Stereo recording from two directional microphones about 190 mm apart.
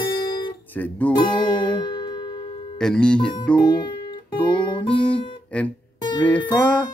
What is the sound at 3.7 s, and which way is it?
Music, 25° left (ahead or behind).